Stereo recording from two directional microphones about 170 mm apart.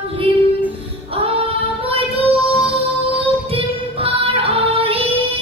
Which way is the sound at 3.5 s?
30° right (ahead or behind).